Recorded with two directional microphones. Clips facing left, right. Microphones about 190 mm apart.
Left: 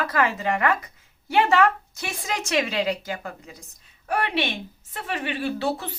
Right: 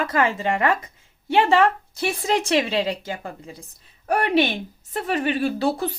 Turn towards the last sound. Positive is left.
turn(degrees=-40)  # may be behind; listen again after turning